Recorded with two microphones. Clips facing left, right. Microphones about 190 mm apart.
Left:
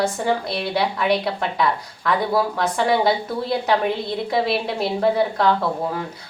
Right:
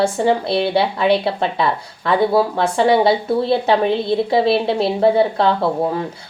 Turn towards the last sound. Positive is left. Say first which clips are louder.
# right 4 dB
turn(degrees=-30)  # may be behind; listen again after turning